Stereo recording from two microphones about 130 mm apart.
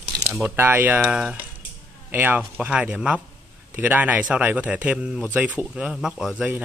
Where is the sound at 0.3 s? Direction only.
20° right (ahead or behind).